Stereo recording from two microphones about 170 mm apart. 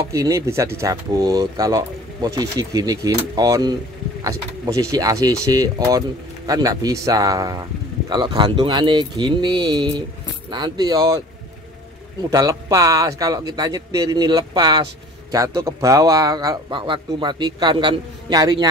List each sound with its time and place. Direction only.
0.1 s speech: 20° right (ahead or behind)